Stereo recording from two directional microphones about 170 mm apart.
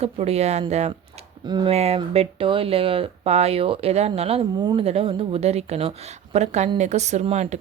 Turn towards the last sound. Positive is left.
turn(degrees=-40)  # may be behind; listen again after turning